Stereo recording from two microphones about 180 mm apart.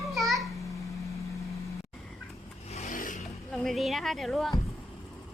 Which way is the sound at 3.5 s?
Centre (ahead or behind).